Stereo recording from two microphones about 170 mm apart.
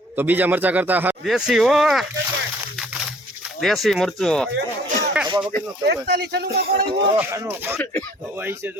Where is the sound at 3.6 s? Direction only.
Centre (ahead or behind).